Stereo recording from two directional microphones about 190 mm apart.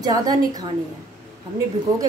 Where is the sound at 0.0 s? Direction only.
20° right (ahead or behind).